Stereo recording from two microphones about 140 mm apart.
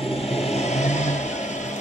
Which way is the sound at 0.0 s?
45° left (ahead or behind).